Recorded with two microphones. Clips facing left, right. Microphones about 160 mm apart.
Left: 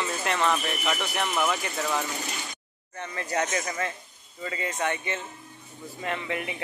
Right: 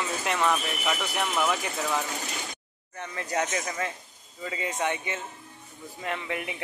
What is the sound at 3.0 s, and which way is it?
Speech, 5° right (ahead or behind).